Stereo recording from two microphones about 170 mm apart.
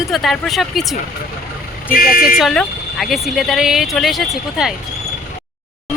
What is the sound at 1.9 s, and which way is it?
Speech, 60° left (ahead or behind).